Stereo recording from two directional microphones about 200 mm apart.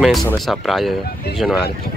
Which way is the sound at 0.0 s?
Centre (ahead or behind).